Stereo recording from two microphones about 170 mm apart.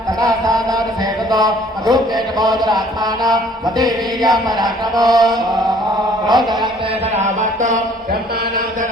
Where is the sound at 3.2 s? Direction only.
20° right (ahead or behind).